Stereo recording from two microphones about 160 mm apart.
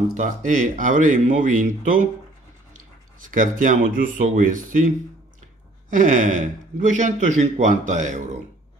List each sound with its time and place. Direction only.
0.1 s a man's voice: 50° right (ahead or behind)
3.3 s a man's voice: 55° right (ahead or behind)